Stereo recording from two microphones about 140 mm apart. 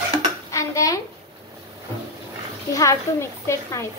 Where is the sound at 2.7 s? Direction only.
20° left (ahead or behind).